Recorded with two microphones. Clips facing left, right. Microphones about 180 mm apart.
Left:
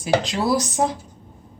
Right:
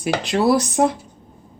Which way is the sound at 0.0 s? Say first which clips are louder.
Right 2 dB; 60° right (ahead or behind).